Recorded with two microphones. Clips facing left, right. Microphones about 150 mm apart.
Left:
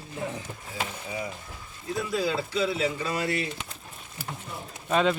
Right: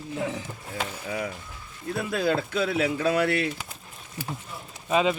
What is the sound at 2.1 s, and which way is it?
Speech, 55° right (ahead or behind).